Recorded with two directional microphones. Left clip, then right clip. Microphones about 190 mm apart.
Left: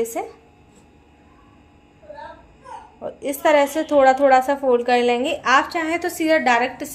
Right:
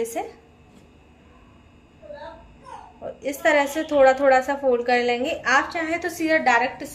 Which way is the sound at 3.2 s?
40° left (ahead or behind).